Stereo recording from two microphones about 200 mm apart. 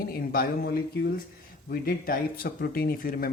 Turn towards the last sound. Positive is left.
turn(degrees=45)  # may be behind; listen again after turning